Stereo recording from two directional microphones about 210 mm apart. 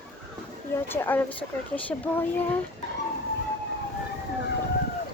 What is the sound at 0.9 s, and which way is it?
Speech, 10° left (ahead or behind).